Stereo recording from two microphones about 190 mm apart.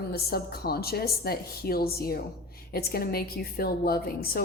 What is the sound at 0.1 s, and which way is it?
A woman's voice, 55° left (ahead or behind).